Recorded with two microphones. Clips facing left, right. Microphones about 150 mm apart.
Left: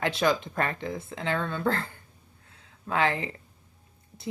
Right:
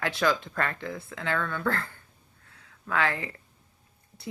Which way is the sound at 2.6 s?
20° left (ahead or behind).